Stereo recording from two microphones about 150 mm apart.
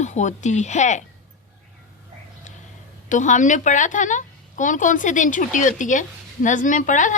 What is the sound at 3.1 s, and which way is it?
A woman's voice, 55° left (ahead or behind).